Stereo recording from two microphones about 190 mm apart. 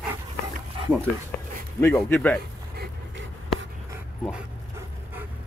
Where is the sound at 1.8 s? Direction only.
10° left (ahead or behind).